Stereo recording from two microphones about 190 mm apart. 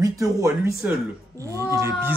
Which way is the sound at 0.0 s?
20° right (ahead or behind).